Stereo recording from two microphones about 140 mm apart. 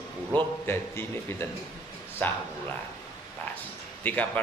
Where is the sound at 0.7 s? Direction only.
15° left (ahead or behind).